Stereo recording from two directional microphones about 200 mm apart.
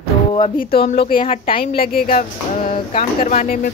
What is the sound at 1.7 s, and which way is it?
Speech, 45° left (ahead or behind).